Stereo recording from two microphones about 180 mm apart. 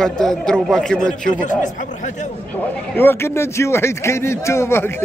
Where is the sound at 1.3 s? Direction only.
45° left (ahead or behind).